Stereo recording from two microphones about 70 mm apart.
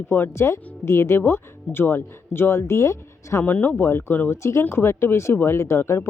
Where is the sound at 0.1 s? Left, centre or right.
Left.